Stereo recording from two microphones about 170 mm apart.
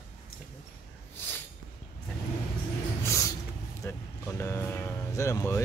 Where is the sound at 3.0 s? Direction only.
15° left (ahead or behind).